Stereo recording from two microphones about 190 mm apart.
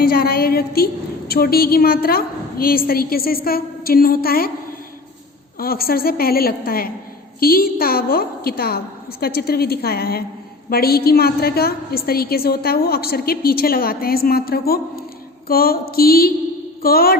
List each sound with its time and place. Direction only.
0.0 s a woman's voice: 50° left (ahead or behind)
5.5 s a woman's voice: 50° left (ahead or behind)